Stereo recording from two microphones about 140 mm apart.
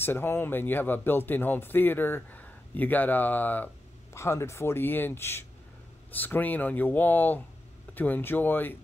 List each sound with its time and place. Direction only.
0.0 s speech: 15° left (ahead or behind)